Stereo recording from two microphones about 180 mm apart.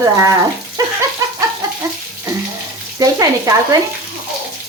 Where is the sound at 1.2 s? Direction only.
15° right (ahead or behind).